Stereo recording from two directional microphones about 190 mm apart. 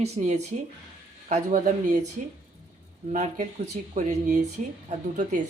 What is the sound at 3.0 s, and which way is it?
Speech, 35° right (ahead or behind).